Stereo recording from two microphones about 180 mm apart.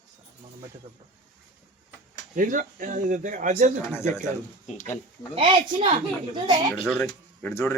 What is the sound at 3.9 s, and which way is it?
Speech, 15° left (ahead or behind).